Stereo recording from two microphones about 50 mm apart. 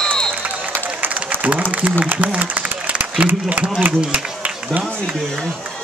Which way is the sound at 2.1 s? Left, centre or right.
Right.